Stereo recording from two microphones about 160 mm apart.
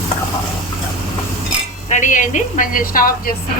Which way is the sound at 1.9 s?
50° left (ahead or behind).